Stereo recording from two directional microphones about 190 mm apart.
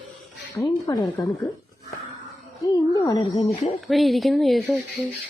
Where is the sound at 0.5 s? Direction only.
20° left (ahead or behind).